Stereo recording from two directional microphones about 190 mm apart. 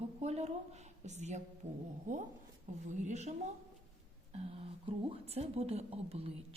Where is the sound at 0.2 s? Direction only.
35° right (ahead or behind).